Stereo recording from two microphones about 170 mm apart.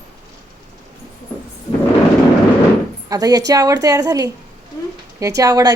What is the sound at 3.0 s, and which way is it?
A woman's voice, 20° right (ahead or behind).